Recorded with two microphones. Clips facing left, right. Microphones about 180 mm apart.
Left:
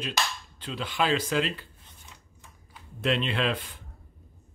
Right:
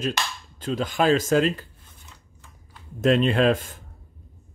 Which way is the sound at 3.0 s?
45° right (ahead or behind).